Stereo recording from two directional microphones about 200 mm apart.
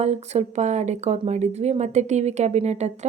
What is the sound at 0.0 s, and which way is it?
Speech, 35° right (ahead or behind).